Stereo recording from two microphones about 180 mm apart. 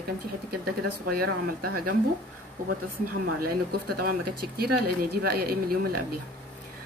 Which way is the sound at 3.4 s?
55° right (ahead or behind).